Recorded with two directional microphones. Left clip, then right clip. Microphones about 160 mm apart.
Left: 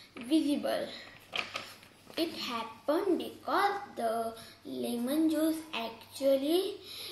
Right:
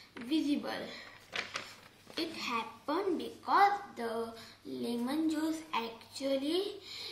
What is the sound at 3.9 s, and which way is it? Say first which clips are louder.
Speech: left 5 dB; 30° right (ahead or behind).